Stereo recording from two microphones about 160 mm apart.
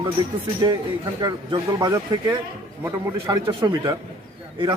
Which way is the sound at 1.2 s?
25° right (ahead or behind).